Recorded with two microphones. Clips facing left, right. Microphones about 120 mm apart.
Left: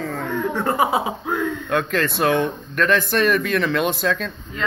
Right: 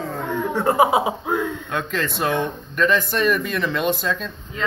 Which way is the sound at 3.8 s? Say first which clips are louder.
Left 1 dB; 75° left (ahead or behind).